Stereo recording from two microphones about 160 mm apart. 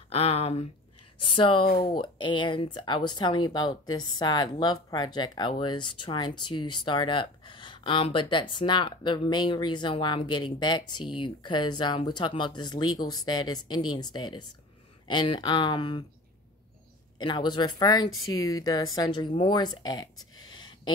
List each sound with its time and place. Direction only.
0.1 s a sound: 40° left (ahead or behind)
1.2 s speech: 30° left (ahead or behind)
17.2 s speech: 30° left (ahead or behind)